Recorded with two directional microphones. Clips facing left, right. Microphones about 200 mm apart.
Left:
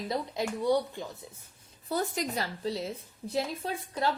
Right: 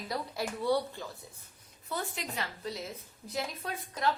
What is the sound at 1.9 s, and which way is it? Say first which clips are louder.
A woman's voice: left 7 dB; 40° left (ahead or behind).